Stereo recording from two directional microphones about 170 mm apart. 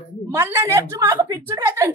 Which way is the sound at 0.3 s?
15° right (ahead or behind).